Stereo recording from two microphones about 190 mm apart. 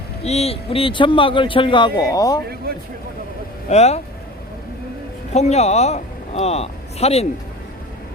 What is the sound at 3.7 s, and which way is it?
Speech, 35° left (ahead or behind).